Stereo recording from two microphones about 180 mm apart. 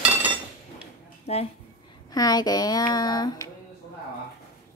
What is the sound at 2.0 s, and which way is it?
Speech, 20° left (ahead or behind).